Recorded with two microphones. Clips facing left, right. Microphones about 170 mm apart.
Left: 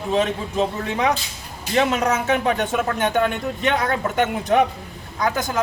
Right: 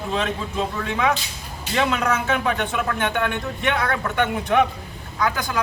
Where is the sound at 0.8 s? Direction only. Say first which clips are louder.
Left 1 dB; 35° left (ahead or behind).